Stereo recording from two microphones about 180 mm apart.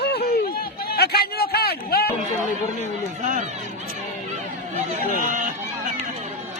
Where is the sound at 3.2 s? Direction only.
45° right (ahead or behind).